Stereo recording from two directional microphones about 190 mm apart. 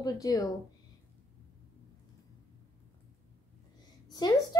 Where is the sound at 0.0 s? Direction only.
20° left (ahead or behind).